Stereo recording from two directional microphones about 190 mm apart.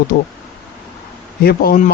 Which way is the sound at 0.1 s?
50° left (ahead or behind).